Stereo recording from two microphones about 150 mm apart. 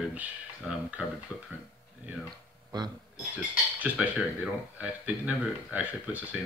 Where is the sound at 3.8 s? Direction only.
10° right (ahead or behind).